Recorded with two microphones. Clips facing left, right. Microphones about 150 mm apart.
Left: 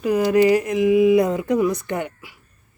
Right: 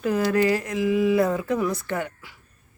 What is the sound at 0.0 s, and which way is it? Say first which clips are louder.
Speech: left 5 dB; 15° left (ahead or behind).